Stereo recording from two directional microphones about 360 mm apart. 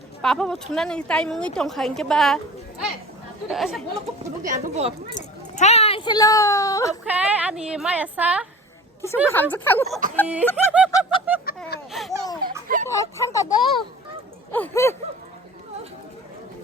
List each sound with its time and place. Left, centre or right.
0.2 s speech: centre
4.4 s speech: centre
5.5 s speech: centre
7.0 s speech: centre
11.3 s a sound: centre
11.9 s speech: centre